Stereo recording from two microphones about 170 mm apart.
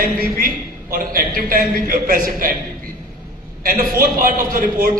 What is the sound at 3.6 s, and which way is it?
A man's voice, 55° right (ahead or behind).